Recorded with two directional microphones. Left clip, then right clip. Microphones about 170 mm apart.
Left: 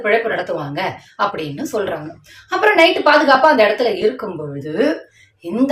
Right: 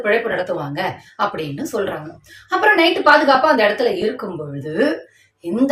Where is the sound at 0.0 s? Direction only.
10° left (ahead or behind).